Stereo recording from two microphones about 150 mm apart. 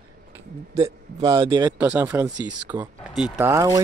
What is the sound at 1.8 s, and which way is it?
Speech, 15° right (ahead or behind).